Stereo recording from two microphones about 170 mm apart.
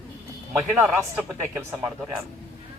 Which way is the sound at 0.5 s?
15° right (ahead or behind).